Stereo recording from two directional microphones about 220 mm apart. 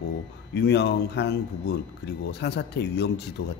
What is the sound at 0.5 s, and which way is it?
Speech, 50° left (ahead or behind).